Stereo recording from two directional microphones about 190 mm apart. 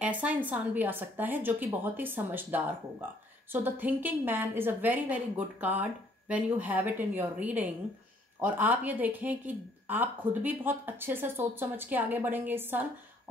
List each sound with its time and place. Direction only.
0.0 s a woman's voice: 5° right (ahead or behind)